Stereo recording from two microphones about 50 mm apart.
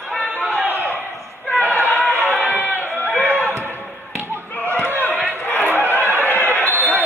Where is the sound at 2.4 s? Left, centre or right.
Left.